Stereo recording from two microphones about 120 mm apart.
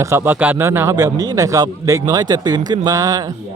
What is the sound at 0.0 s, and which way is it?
A man's voice, 20° right (ahead or behind).